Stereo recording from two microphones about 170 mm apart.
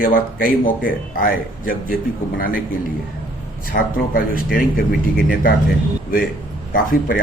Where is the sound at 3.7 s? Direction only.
55° left (ahead or behind).